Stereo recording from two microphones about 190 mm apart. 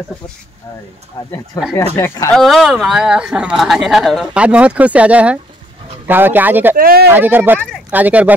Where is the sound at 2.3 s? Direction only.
Centre (ahead or behind).